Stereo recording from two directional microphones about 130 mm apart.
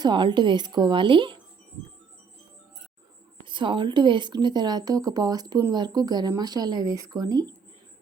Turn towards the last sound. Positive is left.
turn(degrees=-30)  # may be behind; listen again after turning